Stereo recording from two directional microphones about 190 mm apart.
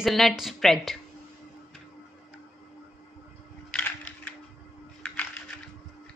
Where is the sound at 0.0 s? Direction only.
Centre (ahead or behind).